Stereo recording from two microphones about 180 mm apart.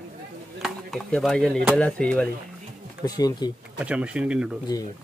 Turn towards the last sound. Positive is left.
turn(degrees=-5)  # may be behind; listen again after turning